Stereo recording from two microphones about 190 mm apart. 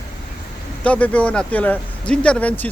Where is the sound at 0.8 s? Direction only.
5° left (ahead or behind).